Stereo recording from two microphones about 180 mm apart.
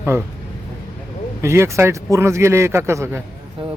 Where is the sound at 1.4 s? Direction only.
15° right (ahead or behind).